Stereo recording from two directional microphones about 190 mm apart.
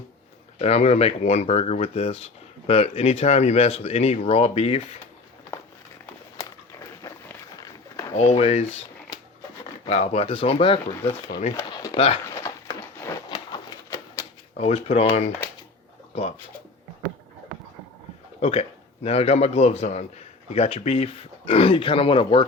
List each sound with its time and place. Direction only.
0.6 s speech: 35° left (ahead or behind)
8.1 s speech: 30° left (ahead or behind)
11.5 s a sound: 15° left (ahead or behind)
11.9 s speech: 30° left (ahead or behind)
12.3 s a sound: 15° left (ahead or behind)
14.5 s speech: 30° left (ahead or behind)
18.3 s speech: 35° left (ahead or behind)